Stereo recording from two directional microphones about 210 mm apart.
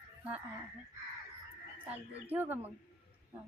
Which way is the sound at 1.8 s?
10° right (ahead or behind).